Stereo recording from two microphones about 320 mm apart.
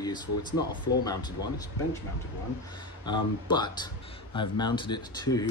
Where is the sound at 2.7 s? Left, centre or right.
Centre.